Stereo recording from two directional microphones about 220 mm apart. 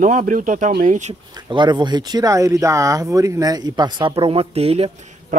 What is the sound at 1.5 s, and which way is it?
Speech, 20° right (ahead or behind).